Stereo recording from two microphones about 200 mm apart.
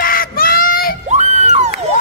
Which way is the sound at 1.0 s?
35° right (ahead or behind).